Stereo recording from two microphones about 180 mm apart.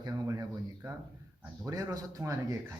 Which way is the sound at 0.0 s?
20° right (ahead or behind).